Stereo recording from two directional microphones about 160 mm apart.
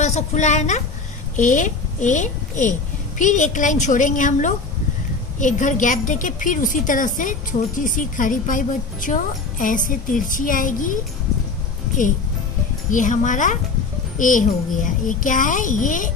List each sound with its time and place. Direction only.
0.0 s a woman's voice: 45° left (ahead or behind)
12.9 s a woman's voice: 50° left (ahead or behind)